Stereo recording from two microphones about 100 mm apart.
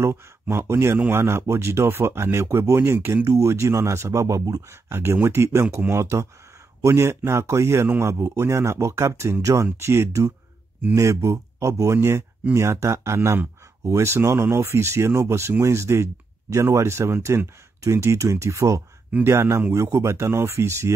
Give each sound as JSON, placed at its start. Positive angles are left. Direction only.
{"t": 0.0, "sound": "speech", "side_deg": -25}